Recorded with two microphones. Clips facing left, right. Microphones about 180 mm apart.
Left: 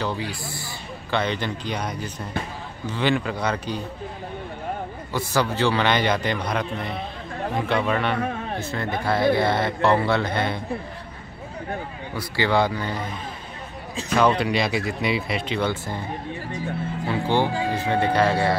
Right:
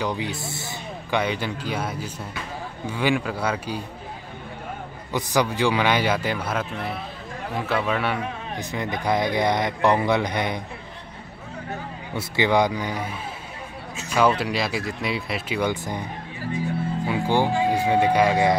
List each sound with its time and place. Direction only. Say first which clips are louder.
0.0 s speech: right 1 dB; 20° right (ahead or behind)
1.1 s speech: even; 10° right (ahead or behind)
5.1 s speech: right 1 dB; 15° right (ahead or behind)
12.2 s speech: right 1 dB; 20° right (ahead or behind)
14.1 s speech: left 1 dB; 5° right (ahead or behind)
17.0 s speech: even; 10° right (ahead or behind)